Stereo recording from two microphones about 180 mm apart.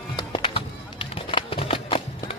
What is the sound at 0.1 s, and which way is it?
Music, 25° left (ahead or behind).